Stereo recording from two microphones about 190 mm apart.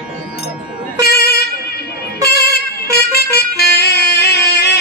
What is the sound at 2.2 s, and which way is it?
Music, 55° left (ahead or behind).